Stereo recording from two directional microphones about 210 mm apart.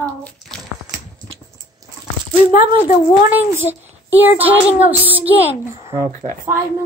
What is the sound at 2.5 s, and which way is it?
Speech, 40° left (ahead or behind).